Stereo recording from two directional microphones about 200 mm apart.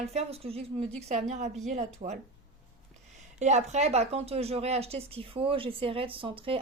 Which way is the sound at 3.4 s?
35° right (ahead or behind).